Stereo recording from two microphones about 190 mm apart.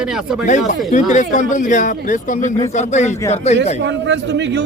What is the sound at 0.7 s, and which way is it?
Speech, 40° left (ahead or behind).